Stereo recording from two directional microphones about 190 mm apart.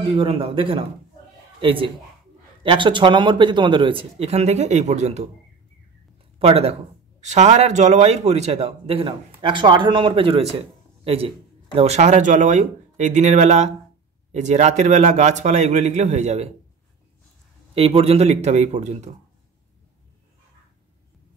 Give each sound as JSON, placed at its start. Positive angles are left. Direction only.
{"t": 0.1, "sound": "speech", "side_deg": -30}
{"t": 6.4, "sound": "speech", "side_deg": -30}
{"t": 17.7, "sound": "speech", "side_deg": -30}